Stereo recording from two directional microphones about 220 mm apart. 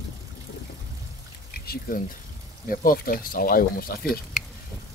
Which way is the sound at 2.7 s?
40° left (ahead or behind).